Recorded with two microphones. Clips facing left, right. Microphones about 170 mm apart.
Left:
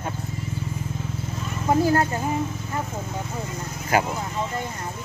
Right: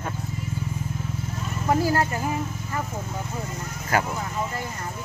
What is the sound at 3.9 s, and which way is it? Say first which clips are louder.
Speech: left 2 dB; 20° left (ahead or behind).